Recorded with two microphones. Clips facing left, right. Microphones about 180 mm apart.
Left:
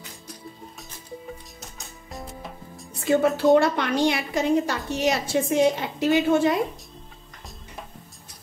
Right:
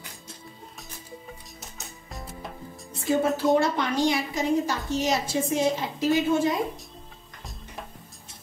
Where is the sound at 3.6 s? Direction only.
65° left (ahead or behind).